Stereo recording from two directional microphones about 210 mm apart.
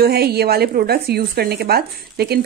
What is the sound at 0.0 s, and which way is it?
Speech, 50° right (ahead or behind).